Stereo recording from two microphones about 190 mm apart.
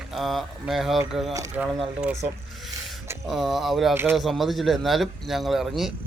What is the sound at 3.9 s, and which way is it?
Speech, 10° right (ahead or behind).